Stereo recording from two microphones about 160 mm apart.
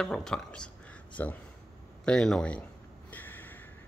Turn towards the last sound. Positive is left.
turn(degrees=10)  # may be behind; listen again after turning